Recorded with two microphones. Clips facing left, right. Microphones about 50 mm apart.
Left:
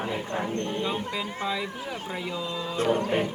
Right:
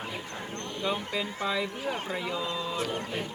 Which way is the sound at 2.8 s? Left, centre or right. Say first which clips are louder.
Left 8 dB; left.